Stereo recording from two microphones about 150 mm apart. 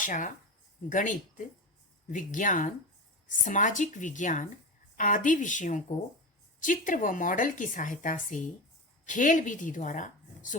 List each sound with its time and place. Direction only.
0.0 s a woman's voice: 60° left (ahead or behind)